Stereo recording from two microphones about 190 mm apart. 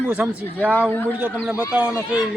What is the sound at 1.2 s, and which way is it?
Speech, 5° right (ahead or behind).